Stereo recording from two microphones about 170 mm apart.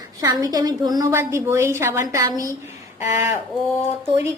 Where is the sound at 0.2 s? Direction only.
20° right (ahead or behind).